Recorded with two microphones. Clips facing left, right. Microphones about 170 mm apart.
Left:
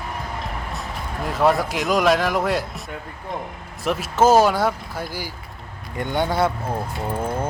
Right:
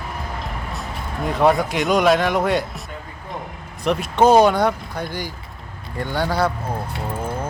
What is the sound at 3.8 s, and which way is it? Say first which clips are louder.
Speech: right 2 dB; 5° left (ahead or behind).